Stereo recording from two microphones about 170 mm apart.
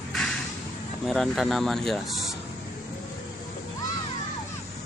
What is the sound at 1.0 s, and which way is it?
Speech, centre (ahead or behind).